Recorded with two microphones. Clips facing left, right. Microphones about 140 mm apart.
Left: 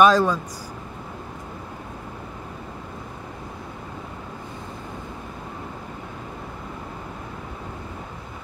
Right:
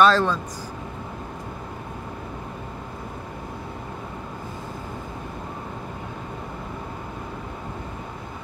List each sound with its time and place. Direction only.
0.0 s speech: 10° left (ahead or behind)